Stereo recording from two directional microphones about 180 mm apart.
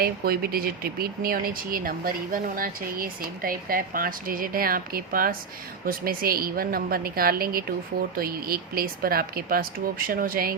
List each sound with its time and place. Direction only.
0.0 s speech: 55° right (ahead or behind)